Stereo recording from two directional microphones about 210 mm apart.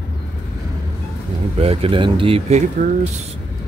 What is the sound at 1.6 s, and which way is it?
Speech, 25° right (ahead or behind).